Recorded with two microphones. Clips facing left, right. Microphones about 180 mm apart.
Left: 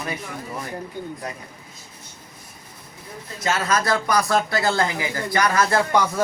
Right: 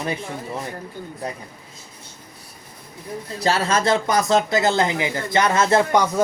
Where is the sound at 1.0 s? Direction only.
15° left (ahead or behind).